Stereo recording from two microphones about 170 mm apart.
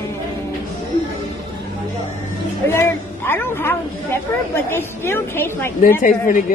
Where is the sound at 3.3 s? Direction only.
15° left (ahead or behind).